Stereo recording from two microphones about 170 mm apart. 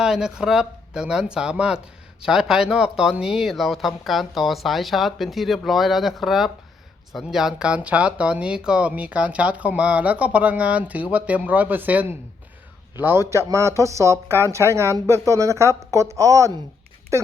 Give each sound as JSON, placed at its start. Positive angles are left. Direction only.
{"t": 0.0, "sound": "speech", "side_deg": -5}